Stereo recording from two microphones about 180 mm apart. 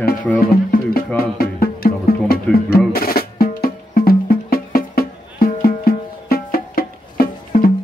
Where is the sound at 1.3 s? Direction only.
55° left (ahead or behind).